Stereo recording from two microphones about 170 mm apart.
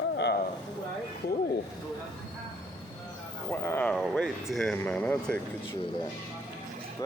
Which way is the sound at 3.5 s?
15° left (ahead or behind).